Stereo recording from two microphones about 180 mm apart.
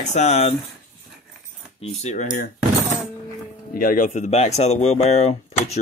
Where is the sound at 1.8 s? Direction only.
40° left (ahead or behind).